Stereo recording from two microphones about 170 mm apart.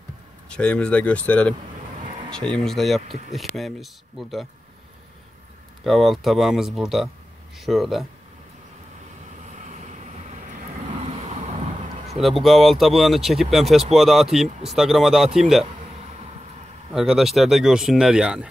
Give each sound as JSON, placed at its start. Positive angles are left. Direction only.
{"t": 0.5, "sound": "speech", "side_deg": 5}
{"t": 3.1, "sound": "speech", "side_deg": -40}
{"t": 3.5, "sound": "speech", "side_deg": 0}
{"t": 5.9, "sound": "speech", "side_deg": 0}
{"t": 9.5, "sound": "vehicle", "side_deg": -45}
{"t": 12.2, "sound": "speech", "side_deg": 0}
{"t": 16.9, "sound": "speech", "side_deg": 0}